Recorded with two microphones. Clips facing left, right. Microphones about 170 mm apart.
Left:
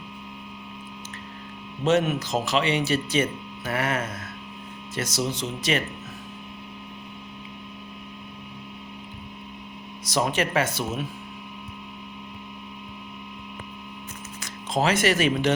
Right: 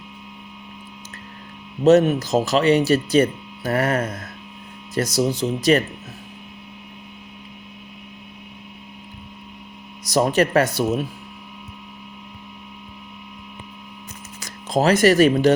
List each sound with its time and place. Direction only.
1.8 s speech: 40° right (ahead or behind)
10.1 s speech: 40° right (ahead or behind)
14.4 s speech: 40° right (ahead or behind)